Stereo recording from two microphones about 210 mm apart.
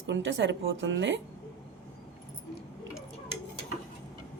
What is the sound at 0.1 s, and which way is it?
A woman's voice, 60° right (ahead or behind).